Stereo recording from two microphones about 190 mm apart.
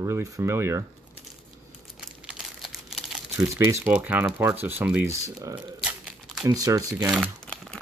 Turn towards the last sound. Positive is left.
turn(degrees=5)  # may be behind; listen again after turning